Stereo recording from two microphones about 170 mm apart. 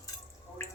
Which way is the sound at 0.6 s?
15° left (ahead or behind).